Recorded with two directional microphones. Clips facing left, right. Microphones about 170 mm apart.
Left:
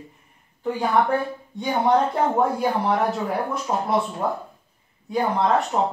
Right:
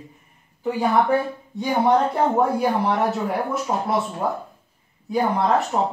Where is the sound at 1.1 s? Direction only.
Centre (ahead or behind).